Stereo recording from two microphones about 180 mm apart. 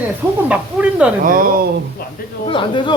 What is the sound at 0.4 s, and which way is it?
Speech, 10° right (ahead or behind).